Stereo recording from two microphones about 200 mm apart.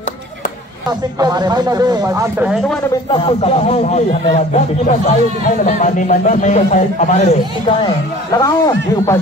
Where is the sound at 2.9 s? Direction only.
25° left (ahead or behind).